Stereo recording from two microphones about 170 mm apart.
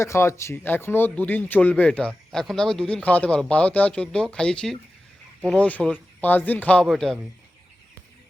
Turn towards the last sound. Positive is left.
turn(degrees=0)  # may be behind; listen again after turning